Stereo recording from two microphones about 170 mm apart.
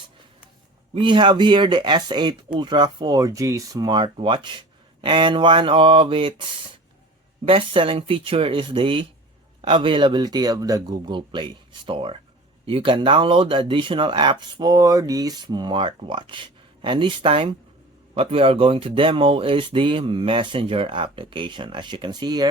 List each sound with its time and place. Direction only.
0.9 s speech: 30° right (ahead or behind)